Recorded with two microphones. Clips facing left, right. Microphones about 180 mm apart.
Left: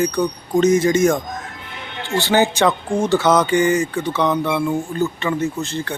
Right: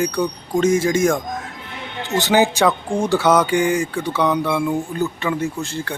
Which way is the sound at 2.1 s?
20° right (ahead or behind).